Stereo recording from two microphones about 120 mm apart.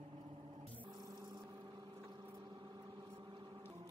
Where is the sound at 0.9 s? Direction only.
30° right (ahead or behind).